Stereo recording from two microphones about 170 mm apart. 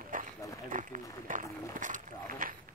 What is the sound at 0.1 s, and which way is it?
Run, 55° right (ahead or behind).